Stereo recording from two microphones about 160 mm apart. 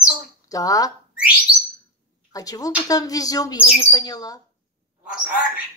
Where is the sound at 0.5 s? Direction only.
20° left (ahead or behind).